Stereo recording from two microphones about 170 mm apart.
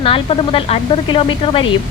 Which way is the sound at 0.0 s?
35° left (ahead or behind).